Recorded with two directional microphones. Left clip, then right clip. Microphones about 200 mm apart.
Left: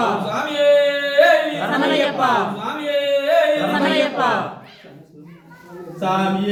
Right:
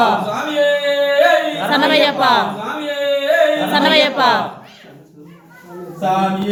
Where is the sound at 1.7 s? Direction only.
20° right (ahead or behind).